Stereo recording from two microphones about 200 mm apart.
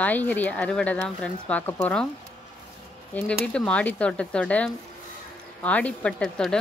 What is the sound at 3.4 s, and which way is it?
Speech, 5° left (ahead or behind).